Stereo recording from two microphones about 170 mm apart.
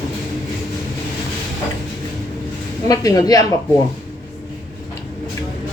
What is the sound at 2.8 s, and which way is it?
Speech, 20° left (ahead or behind).